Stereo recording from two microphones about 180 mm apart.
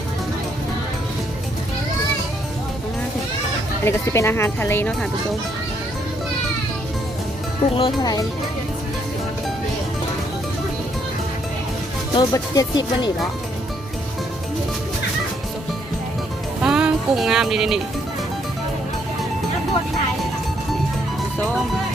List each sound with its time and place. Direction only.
3.8 s speech: 15° left (ahead or behind)
7.8 s speech: 25° left (ahead or behind)
12.1 s speech: 20° left (ahead or behind)
16.6 s music: 5° right (ahead or behind)